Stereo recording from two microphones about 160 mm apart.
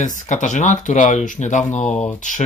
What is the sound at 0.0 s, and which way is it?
Speech, 50° left (ahead or behind).